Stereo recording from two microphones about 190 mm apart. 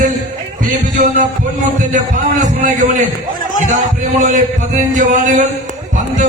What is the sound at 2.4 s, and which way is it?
Music, 40° right (ahead or behind).